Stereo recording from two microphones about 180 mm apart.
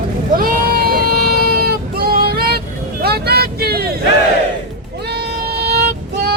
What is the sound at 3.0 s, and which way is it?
Vehicle, 60° right (ahead or behind).